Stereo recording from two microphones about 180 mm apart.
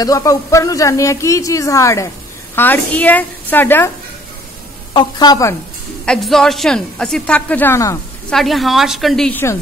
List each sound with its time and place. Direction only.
0.0 s speech: 20° left (ahead or behind)
4.9 s speech: 20° left (ahead or behind)
6.0 s a man's voice: centre (ahead or behind)
8.3 s a man's voice: centre (ahead or behind)